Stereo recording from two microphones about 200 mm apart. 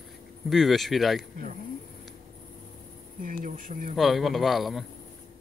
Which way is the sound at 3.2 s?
45° right (ahead or behind).